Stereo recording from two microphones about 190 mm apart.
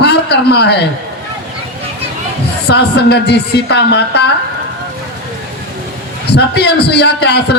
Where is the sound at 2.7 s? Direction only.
60° left (ahead or behind).